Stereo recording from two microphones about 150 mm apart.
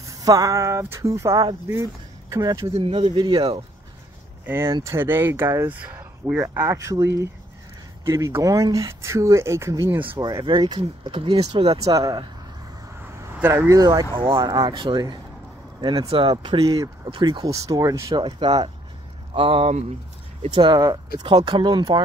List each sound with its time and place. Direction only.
0.0 s speech: 25° right (ahead or behind)
2.7 s speech: 35° right (ahead or behind)
4.6 s speech: 30° right (ahead or behind)
4.9 s speech: 15° right (ahead or behind)
10.4 s speech: 30° right (ahead or behind)
11.8 s speech: 25° right (ahead or behind)
12.9 s vehicle: 15° right (ahead or behind)
14.1 s speech: 35° right (ahead or behind)
16.6 s speech: 25° right (ahead or behind)
17.5 s speech: 25° right (ahead or behind); by 19.8 s 40° right (ahead or behind)
20.5 s speech: 30° right (ahead or behind)